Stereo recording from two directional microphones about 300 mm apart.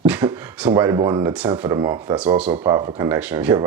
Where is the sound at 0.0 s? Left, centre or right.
Centre.